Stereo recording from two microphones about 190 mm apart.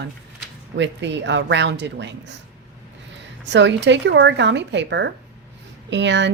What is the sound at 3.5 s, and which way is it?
Speech, 70° right (ahead or behind).